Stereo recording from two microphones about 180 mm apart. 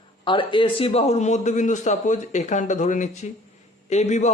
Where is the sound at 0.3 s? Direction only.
25° left (ahead or behind).